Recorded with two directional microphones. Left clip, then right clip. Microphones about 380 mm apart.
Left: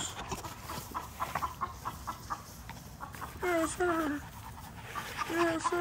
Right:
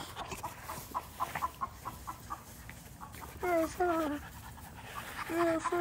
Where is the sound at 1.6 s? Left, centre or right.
Centre.